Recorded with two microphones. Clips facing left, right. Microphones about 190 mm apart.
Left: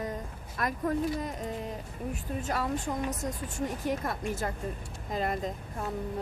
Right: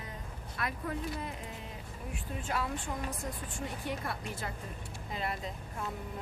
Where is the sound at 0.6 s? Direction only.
45° left (ahead or behind).